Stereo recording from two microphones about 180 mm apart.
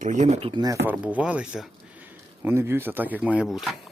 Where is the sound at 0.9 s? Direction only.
5° right (ahead or behind).